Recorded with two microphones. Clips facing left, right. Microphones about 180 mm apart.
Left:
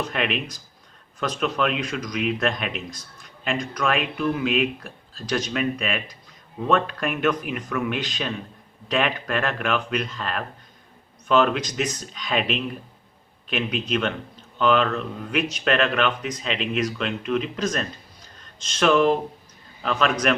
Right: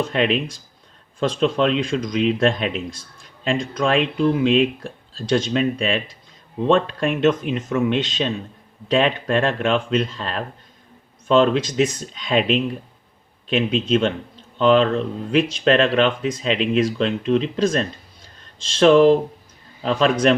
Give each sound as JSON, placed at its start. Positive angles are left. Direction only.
{"t": 0.0, "sound": "speech", "side_deg": -30}